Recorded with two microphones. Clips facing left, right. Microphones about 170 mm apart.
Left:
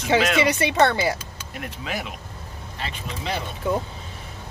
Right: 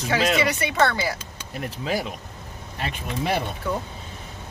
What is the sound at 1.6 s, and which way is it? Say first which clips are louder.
Speech: right 4 dB; 35° right (ahead or behind).